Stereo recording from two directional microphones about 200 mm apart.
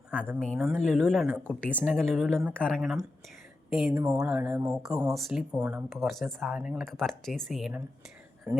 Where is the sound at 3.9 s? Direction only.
15° right (ahead or behind).